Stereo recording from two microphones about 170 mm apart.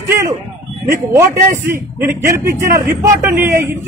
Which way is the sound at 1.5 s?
15° right (ahead or behind).